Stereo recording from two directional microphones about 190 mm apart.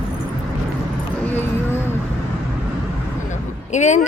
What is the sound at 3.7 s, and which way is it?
Speech, 40° left (ahead or behind).